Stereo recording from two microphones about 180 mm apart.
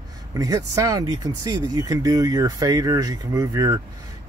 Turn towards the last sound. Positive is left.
turn(degrees=-20)  # may be behind; listen again after turning